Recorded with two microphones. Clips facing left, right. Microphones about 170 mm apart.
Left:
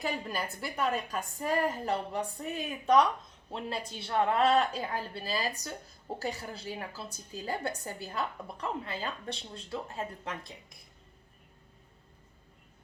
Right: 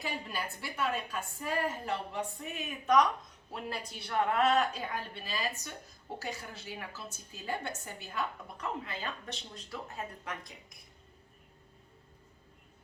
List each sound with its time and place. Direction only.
0.0 s a woman's voice: 40° left (ahead or behind)